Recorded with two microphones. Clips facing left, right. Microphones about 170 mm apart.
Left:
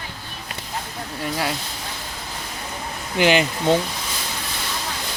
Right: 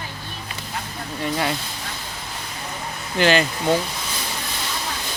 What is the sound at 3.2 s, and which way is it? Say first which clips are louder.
Speech: left 1 dB; 15° left (ahead or behind).